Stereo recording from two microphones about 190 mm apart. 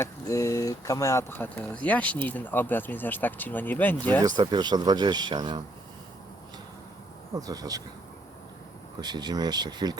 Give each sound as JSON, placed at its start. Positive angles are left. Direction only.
{"t": 0.0, "sound": "speech", "side_deg": 15}
{"t": 4.4, "sound": "speech", "side_deg": -20}
{"t": 7.3, "sound": "speech", "side_deg": -20}
{"t": 9.0, "sound": "speech", "side_deg": -20}